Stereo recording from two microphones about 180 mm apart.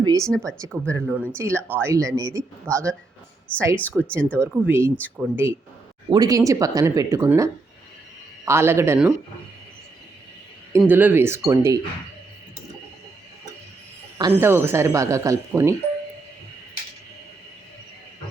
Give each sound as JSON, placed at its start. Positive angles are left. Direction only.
{"t": 0.0, "sound": "speech", "side_deg": -20}
{"t": 0.3, "sound": "speech", "side_deg": 5}
{"t": 0.6, "sound": "speech", "side_deg": -15}
{"t": 2.7, "sound": "speech", "side_deg": 5}
{"t": 4.4, "sound": "speech", "side_deg": -10}
{"t": 6.1, "sound": "speech", "side_deg": -20}
{"t": 10.7, "sound": "speech", "side_deg": -15}
{"t": 14.2, "sound": "speech", "side_deg": -15}